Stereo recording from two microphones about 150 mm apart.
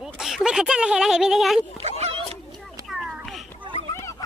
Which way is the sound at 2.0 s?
45° right (ahead or behind).